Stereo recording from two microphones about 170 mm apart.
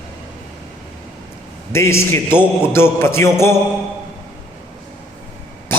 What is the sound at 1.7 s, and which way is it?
Music, 15° left (ahead or behind).